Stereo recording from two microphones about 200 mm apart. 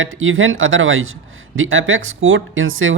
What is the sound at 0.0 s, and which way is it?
A man's voice, 85° right.